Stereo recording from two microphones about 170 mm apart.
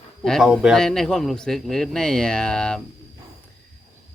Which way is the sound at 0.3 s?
Centre (ahead or behind).